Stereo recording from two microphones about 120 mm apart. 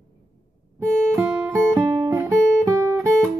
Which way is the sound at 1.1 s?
25° right (ahead or behind).